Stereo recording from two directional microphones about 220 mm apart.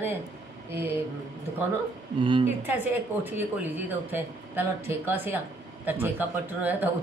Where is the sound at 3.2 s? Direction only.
10° right (ahead or behind).